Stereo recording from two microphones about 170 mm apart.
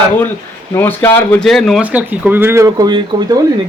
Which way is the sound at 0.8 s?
10° left (ahead or behind).